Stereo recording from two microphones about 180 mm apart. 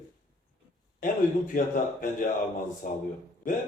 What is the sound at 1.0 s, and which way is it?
Speech, 50° left (ahead or behind).